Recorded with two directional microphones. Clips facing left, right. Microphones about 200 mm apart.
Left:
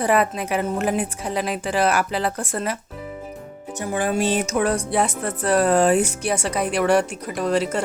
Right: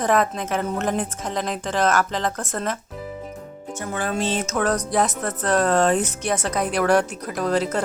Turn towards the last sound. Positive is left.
turn(degrees=0)  # may be behind; listen again after turning